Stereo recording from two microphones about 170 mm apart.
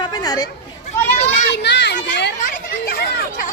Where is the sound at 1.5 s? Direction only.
90° left.